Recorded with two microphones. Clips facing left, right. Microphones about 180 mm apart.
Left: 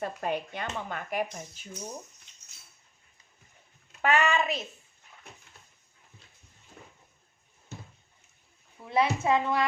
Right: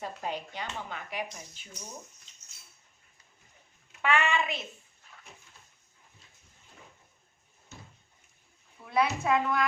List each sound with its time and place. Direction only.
0.0 s speech: 55° left (ahead or behind)
2.3 s cutlery: 60° left (ahead or behind)
4.0 s a child's voice: 40° left (ahead or behind)
8.9 s a woman's voice: 25° left (ahead or behind)